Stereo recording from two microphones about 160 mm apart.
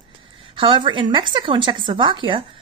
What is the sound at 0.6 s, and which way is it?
Speech, 30° right (ahead or behind).